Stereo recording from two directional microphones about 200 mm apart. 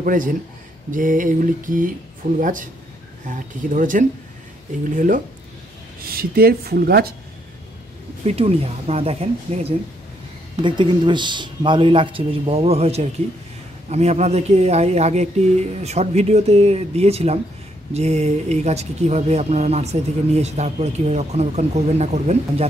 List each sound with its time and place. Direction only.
0.0 s speech: 45° right (ahead or behind)
8.3 s speech: 30° right (ahead or behind)